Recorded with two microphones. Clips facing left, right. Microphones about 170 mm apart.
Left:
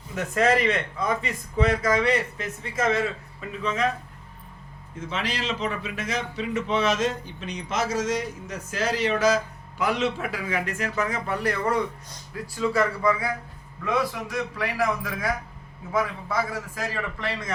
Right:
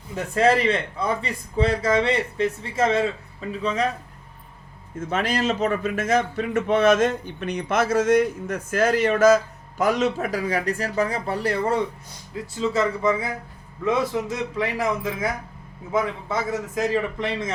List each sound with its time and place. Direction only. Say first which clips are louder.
0.3 s speech: right 3 dB; 30° right (ahead or behind)
4.9 s a man's voice: right 6 dB; 50° right (ahead or behind); by 17.5 s 20° right (ahead or behind)